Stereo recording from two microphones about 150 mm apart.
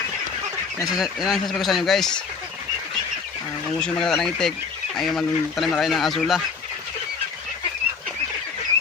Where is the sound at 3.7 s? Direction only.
5° left (ahead or behind).